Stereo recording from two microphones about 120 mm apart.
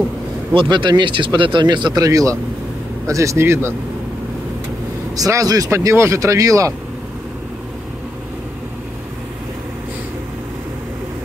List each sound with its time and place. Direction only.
0.5 s speech: 40° right (ahead or behind)
2.0 s speech: 25° right (ahead or behind)
5.1 s speech: 30° right (ahead or behind)